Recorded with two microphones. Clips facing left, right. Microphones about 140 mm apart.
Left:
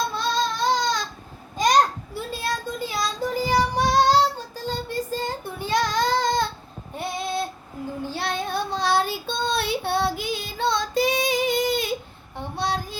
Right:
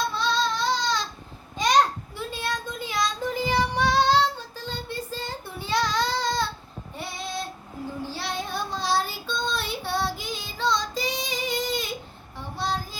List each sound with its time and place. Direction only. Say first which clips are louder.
0.1 s baby cry: left 1 dB; 45° left (ahead or behind)
1.6 s a sound: left 3 dB; 45° left (ahead or behind)
2.1 s child singing: left 3 dB; 40° left (ahead or behind); by 13.0 s 65° left (ahead or behind)